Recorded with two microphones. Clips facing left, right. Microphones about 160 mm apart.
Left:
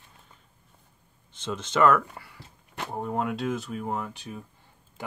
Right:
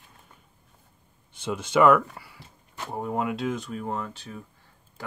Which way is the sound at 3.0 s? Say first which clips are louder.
Right 1 dB; 5° right (ahead or behind).